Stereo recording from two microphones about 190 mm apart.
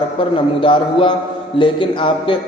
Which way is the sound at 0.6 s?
25° left (ahead or behind).